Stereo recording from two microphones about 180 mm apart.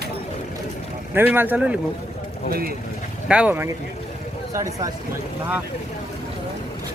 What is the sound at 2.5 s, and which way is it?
Speech, 55° right (ahead or behind).